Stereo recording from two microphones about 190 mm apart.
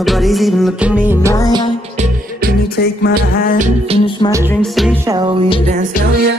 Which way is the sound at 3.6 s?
40° right (ahead or behind).